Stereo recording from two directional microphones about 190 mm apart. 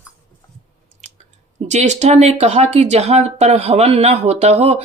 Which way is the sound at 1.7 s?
35° right (ahead or behind).